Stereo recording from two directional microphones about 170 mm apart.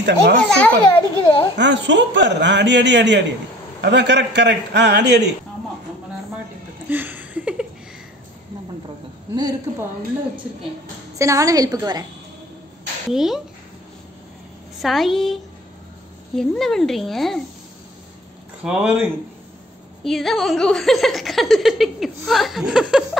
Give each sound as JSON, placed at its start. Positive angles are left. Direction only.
{"t": 0.0, "sound": "speech", "side_deg": -90}
{"t": 0.5, "sound": "a child's voice", "side_deg": 5}
{"t": 1.6, "sound": "speech", "side_deg": -90}
{"t": 6.9, "sound": "a sound", "side_deg": -10}
{"t": 9.3, "sound": "a woman's voice", "side_deg": -25}
{"t": 11.1, "sound": "a woman's voice", "side_deg": -20}
{"t": 13.1, "sound": "speech", "side_deg": 0}
{"t": 14.8, "sound": "speech", "side_deg": 0}
{"t": 18.6, "sound": "speech", "side_deg": -5}